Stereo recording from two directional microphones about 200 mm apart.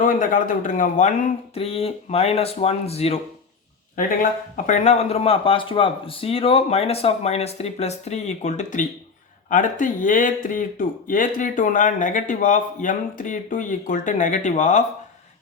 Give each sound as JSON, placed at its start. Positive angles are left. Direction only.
{"t": 0.0, "sound": "speech", "side_deg": 45}
{"t": 3.9, "sound": "speech", "side_deg": 40}